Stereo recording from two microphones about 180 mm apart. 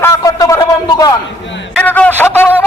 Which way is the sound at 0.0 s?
20° left (ahead or behind).